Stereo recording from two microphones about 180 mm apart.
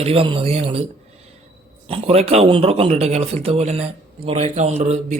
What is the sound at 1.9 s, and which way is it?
Speech, 35° right (ahead or behind).